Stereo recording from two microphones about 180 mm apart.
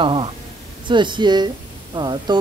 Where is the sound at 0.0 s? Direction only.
30° right (ahead or behind).